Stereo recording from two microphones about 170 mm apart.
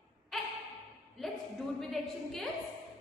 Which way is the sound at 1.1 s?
Centre (ahead or behind).